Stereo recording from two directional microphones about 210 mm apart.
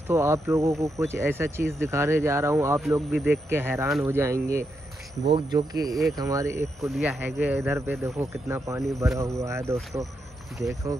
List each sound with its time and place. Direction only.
0.1 s speech: 15° right (ahead or behind)
3.1 s speech: centre (ahead or behind)
3.4 s speech: 10° right (ahead or behind)
5.2 s speech: 25° right (ahead or behind)
6.8 s speech: centre (ahead or behind)
10.9 s speech: 15° right (ahead or behind)